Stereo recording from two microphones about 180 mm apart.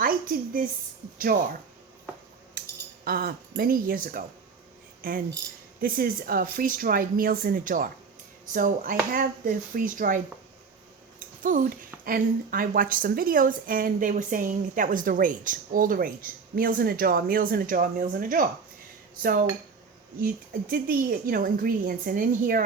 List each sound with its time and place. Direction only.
0.0 s a sound: 50° right (ahead or behind)
3.0 s speech: 60° right (ahead or behind)
5.8 s a woman's voice: 50° right (ahead or behind)
11.4 s a woman's voice: 50° right (ahead or behind)
20.7 s a woman's voice: 55° right (ahead or behind)